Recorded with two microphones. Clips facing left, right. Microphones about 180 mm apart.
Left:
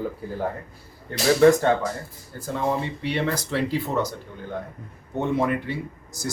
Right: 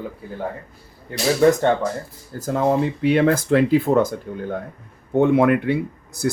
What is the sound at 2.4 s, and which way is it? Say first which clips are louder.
Speech: right 6 dB; 45° right (ahead or behind).